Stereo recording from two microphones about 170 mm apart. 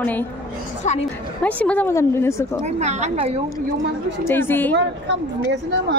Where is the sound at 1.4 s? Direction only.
10° left (ahead or behind).